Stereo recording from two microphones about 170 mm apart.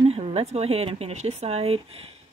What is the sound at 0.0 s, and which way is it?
Speech, 35° right (ahead or behind).